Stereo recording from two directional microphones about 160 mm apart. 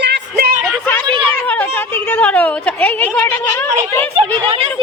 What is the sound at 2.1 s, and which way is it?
A woman's voice, 10° left (ahead or behind).